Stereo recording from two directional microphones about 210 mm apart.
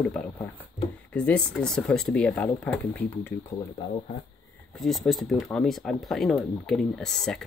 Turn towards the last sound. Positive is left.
turn(degrees=5)  # may be behind; listen again after turning